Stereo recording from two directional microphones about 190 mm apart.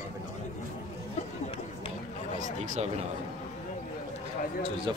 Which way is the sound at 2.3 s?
40° right (ahead or behind).